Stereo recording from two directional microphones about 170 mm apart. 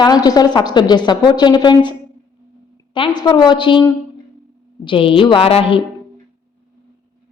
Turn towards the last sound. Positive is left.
turn(degrees=35)  # may be behind; listen again after turning